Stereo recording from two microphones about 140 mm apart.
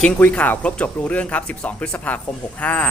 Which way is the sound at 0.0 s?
5° left (ahead or behind).